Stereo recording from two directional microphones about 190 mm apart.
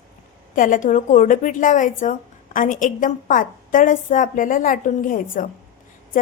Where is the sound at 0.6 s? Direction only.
45° left (ahead or behind).